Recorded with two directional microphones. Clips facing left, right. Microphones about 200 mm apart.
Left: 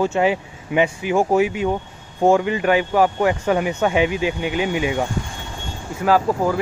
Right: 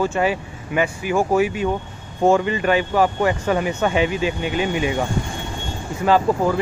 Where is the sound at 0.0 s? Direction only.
20° left (ahead or behind).